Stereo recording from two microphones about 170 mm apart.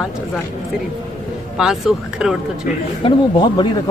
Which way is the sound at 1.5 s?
5° right (ahead or behind).